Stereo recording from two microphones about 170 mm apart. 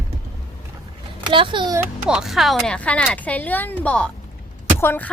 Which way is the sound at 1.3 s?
30° right (ahead or behind).